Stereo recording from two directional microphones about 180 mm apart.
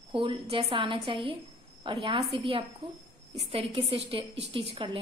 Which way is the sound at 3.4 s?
30° right (ahead or behind).